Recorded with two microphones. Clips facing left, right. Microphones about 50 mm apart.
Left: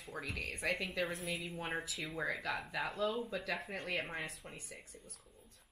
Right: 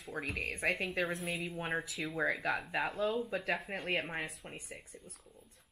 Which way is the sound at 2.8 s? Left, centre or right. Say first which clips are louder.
Right 4 dB; right.